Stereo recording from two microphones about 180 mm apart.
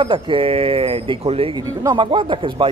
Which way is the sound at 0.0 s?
30° right (ahead or behind).